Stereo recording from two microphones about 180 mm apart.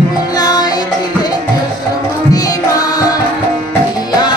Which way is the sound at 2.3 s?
20° left (ahead or behind).